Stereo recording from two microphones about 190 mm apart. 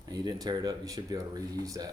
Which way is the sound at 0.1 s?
20° right (ahead or behind).